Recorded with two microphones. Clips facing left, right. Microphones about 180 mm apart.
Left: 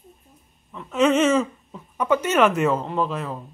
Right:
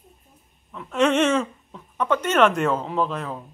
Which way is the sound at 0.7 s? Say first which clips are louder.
Left 1 dB; centre (ahead or behind).